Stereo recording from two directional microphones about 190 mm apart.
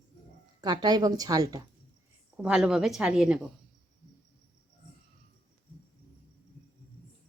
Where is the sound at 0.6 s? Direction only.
20° right (ahead or behind).